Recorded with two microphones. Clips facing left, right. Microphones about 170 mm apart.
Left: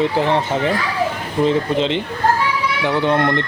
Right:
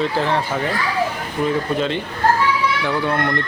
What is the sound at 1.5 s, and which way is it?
Speech, 20° left (ahead or behind).